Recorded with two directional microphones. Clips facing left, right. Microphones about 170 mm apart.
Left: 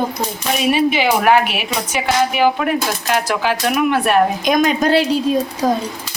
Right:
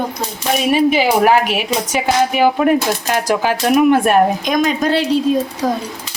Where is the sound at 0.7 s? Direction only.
40° right (ahead or behind).